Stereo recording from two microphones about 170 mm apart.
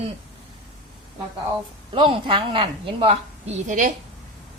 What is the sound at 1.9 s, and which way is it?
A woman's voice, 30° right (ahead or behind).